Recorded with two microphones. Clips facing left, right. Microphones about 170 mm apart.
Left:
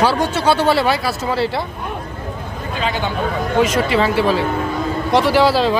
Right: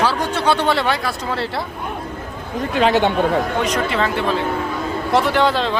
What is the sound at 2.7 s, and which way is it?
Speech, 70° right (ahead or behind).